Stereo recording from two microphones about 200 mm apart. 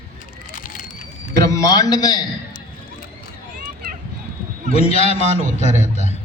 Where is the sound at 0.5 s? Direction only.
40° left (ahead or behind).